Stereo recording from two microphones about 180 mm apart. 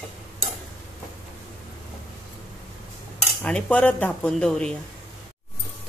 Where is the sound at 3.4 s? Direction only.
5° left (ahead or behind).